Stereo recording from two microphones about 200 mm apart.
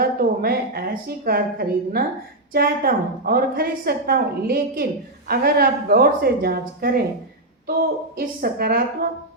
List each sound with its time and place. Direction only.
0.0 s a woman's voice: 50° right (ahead or behind)
8.1 s a woman's voice: 50° right (ahead or behind)